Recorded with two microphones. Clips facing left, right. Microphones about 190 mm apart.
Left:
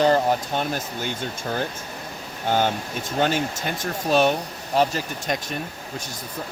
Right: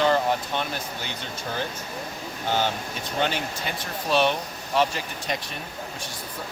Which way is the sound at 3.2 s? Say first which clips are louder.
Left 4 dB; 45° left (ahead or behind).